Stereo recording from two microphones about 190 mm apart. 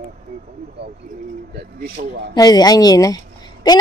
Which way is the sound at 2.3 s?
20° left (ahead or behind).